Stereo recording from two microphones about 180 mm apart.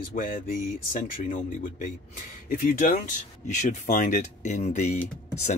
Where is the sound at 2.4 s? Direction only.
50° left (ahead or behind).